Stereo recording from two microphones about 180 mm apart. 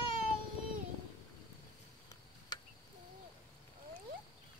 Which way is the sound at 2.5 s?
20° left (ahead or behind).